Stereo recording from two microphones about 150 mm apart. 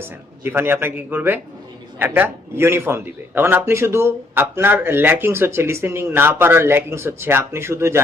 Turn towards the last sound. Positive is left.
turn(degrees=-15)  # may be behind; listen again after turning